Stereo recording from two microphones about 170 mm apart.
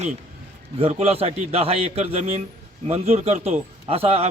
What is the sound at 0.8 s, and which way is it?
A man's voice, 40° right (ahead or behind).